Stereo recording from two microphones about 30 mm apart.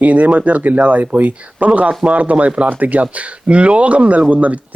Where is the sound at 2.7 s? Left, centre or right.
Right.